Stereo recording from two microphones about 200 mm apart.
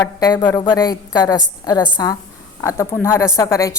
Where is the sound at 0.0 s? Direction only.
20° left (ahead or behind).